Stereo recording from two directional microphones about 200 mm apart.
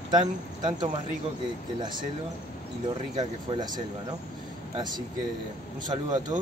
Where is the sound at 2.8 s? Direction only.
20° right (ahead or behind).